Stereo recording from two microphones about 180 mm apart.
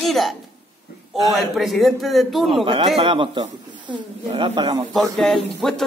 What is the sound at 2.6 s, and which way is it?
Speech, 30° right (ahead or behind).